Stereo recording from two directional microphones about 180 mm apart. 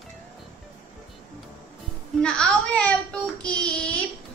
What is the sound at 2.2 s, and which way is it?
A child's voice, 5° left (ahead or behind).